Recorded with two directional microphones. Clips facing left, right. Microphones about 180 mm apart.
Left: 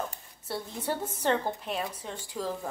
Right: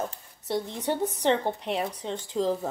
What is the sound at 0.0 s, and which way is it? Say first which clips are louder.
A woman's voice: right 3 dB; 20° right (ahead or behind).